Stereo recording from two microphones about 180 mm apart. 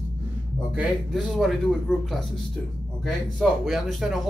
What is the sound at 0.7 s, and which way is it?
Speech, centre (ahead or behind).